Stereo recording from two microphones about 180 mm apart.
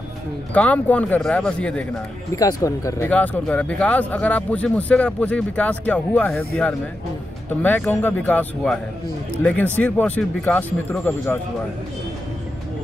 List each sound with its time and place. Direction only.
0.6 s speech: 5° left (ahead or behind)
2.3 s speech: 20° left (ahead or behind)
3.1 s speech: 5° left (ahead or behind)